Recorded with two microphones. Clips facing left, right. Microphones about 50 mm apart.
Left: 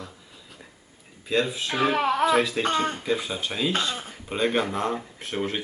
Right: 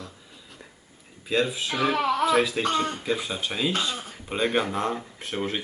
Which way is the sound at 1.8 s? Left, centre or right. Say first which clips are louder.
Left 1 dB; left.